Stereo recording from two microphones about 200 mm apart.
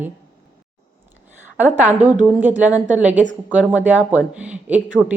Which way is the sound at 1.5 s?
10° right (ahead or behind).